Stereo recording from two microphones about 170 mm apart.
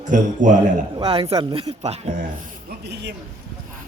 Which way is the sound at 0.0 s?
50° right (ahead or behind).